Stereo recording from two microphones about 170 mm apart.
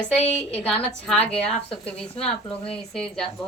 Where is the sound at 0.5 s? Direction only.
10° left (ahead or behind).